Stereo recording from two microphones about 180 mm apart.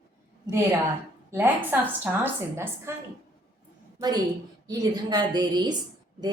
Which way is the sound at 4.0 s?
20° right (ahead or behind).